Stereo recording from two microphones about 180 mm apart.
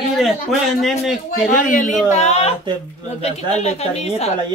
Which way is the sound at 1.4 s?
50° left (ahead or behind).